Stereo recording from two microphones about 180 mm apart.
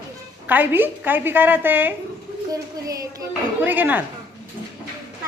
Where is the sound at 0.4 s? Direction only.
10° right (ahead or behind).